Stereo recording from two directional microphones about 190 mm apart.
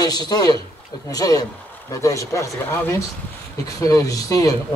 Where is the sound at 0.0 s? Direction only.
20° left (ahead or behind).